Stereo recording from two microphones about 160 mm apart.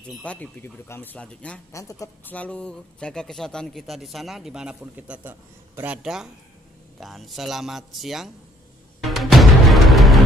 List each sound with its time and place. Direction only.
0.2 s speech: 10° left (ahead or behind)
1.7 s speech: 20° left (ahead or behind)
2.3 s a man's voice: 10° left (ahead or behind)
9.0 s music: centre (ahead or behind)